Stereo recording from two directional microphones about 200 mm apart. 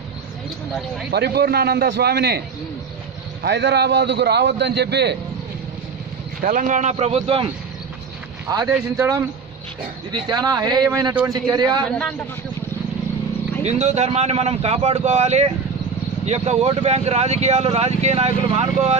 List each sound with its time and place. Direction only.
1.1 s a man's voice: 55° right (ahead or behind)
3.4 s a man's voice: 60° right (ahead or behind)
6.4 s speech: 40° right (ahead or behind)
8.5 s speech: 15° right (ahead or behind)
11.1 s speech: 10° right (ahead or behind)
11.5 s speech: 20° right (ahead or behind)
13.7 s speech: 35° right (ahead or behind)